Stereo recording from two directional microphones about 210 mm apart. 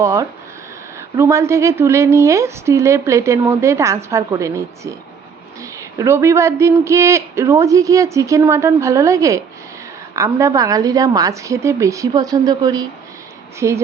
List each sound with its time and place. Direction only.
0.0 s a woman's voice: 15° right (ahead or behind)